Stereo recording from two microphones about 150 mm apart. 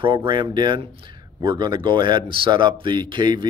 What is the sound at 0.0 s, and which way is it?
Speech, 35° right (ahead or behind).